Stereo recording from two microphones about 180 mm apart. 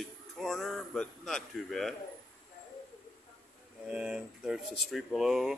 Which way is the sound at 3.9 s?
5° right (ahead or behind).